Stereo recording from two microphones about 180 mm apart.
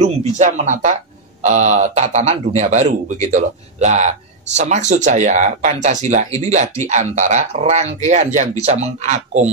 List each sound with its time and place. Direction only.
0.0 s a man's voice: 40° right (ahead or behind)